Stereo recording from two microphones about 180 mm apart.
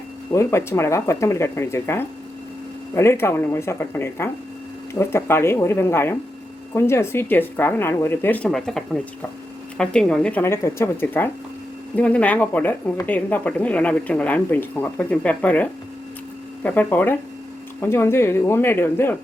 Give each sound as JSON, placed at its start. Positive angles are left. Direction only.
{"t": 0.3, "sound": "speech", "side_deg": 15}